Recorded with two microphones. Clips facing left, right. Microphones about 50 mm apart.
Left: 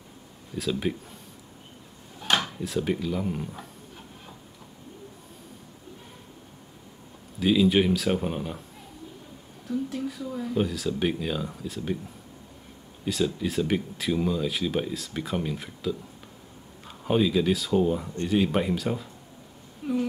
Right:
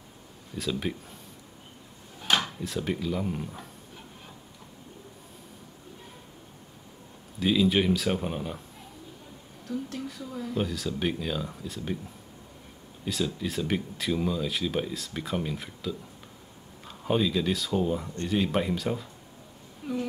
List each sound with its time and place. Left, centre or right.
0.6 s speech: centre
2.2 s speech: centre
7.3 s speech: centre
9.7 s speech: centre
13.0 s speech: centre